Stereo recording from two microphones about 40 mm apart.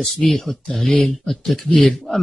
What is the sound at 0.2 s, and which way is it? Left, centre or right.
Speech, centre.